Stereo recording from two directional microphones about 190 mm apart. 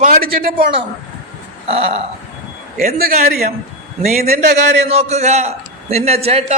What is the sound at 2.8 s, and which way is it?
Speech, 50° right (ahead or behind).